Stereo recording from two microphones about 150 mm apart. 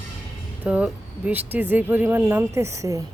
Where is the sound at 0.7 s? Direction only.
10° right (ahead or behind).